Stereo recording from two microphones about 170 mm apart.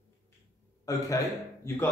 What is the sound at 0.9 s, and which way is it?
Speech, 20° left (ahead or behind).